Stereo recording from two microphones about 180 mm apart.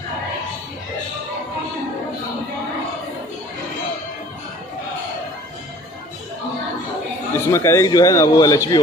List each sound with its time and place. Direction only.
7.3 s a man's voice: 15° left (ahead or behind)